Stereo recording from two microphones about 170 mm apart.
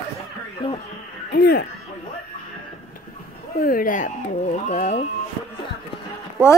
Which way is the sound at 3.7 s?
55° left (ahead or behind).